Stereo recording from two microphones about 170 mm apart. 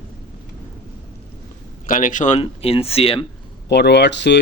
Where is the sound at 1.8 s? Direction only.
50° left (ahead or behind); by 3.2 s 35° left (ahead or behind).